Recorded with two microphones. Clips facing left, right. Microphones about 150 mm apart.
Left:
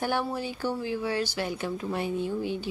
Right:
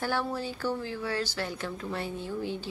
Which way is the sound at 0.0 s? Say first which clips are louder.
Left 2 dB; 15° left (ahead or behind).